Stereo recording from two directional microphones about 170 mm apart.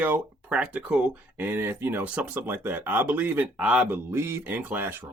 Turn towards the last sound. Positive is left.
turn(degrees=-10)  # may be behind; listen again after turning